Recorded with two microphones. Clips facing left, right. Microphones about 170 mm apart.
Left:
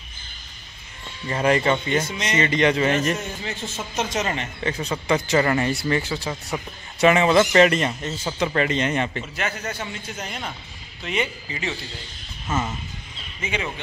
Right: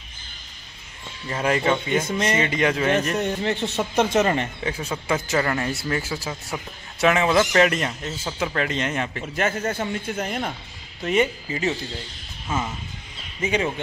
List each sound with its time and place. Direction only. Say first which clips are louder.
1.2 s speech: left 2 dB; centre (ahead or behind)
2.0 s a man's voice: right 6 dB; 55° right (ahead or behind)
2.3 s speech: left 5 dB; 5° right (ahead or behind)
3.2 s speech: right 8 dB; 65° right (ahead or behind)
4.6 s speech: left 2 dB; 5° right (ahead or behind)
9.4 s a man's voice: right 6 dB; 50° right (ahead or behind)
12.5 s speech: left 1 dB; 10° right (ahead or behind)
13.4 s speech: right 5 dB; 40° right (ahead or behind)